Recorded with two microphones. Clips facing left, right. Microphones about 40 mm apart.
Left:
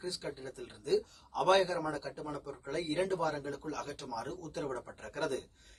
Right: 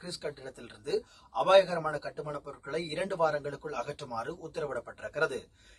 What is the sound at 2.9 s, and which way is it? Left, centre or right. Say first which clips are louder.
Speech: right 3 dB; right.